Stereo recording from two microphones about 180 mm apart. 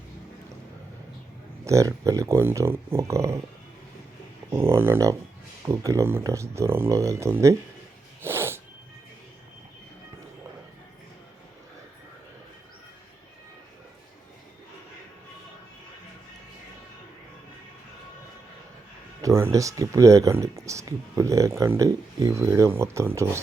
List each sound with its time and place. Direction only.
1.6 s speech: 15° right (ahead or behind)
4.4 s speech: 15° right (ahead or behind)
8.2 s sneeze: 15° right (ahead or behind)
19.2 s speech: 15° right (ahead or behind)